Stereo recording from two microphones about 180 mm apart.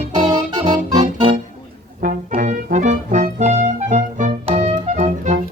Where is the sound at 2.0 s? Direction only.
45° right (ahead or behind).